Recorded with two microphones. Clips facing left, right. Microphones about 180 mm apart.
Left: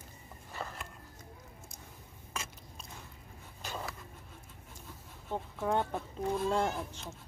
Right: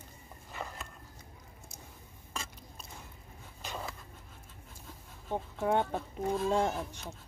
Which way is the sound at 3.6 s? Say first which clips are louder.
Even; 5° left (ahead or behind).